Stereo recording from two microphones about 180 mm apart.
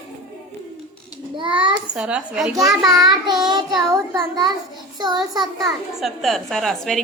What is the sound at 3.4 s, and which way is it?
A child's voice, 25° right (ahead or behind).